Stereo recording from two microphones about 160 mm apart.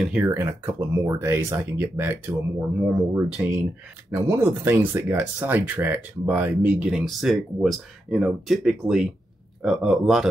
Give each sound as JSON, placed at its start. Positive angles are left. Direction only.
{"t": 0.0, "sound": "speech", "side_deg": -10}